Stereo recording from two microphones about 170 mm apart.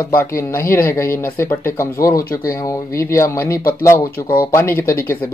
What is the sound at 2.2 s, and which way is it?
Speech, 60° left (ahead or behind).